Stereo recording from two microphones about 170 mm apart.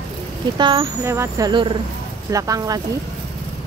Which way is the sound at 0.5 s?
25° right (ahead or behind).